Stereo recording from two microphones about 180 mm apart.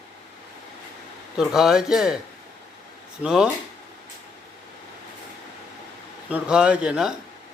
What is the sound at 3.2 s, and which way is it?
Speech, 5° right (ahead or behind).